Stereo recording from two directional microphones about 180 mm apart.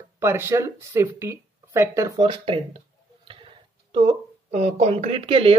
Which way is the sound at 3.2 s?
30° right (ahead or behind).